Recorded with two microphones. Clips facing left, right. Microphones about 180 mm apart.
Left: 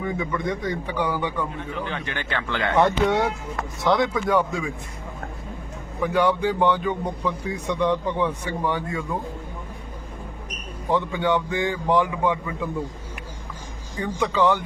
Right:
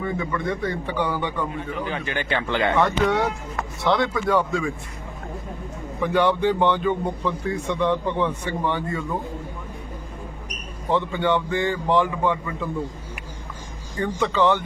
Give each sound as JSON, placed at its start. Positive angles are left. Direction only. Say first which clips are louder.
{"t": 0.0, "sound": "speech", "louder": "even", "side_deg": 15}
{"t": 1.8, "sound": "speech", "louder": "right 3 dB", "side_deg": -10}
{"t": 2.7, "sound": "speech", "louder": "left 3 dB", "side_deg": 10}
{"t": 4.4, "sound": "speech", "louder": "right 1 dB", "side_deg": 15}
{"t": 6.0, "sound": "speech", "louder": "right 1 dB", "side_deg": 5}
{"t": 11.1, "sound": "speech", "louder": "right 1 dB", "side_deg": 10}
{"t": 14.0, "sound": "speech", "louder": "right 1 dB", "side_deg": 10}